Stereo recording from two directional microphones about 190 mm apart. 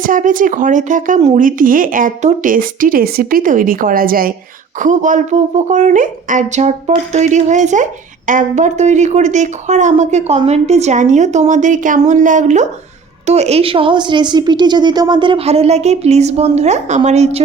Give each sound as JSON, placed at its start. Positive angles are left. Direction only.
{"t": 0.0, "sound": "speech", "side_deg": -45}